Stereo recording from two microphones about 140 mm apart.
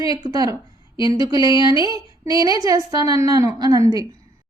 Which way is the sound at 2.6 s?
25° right (ahead or behind).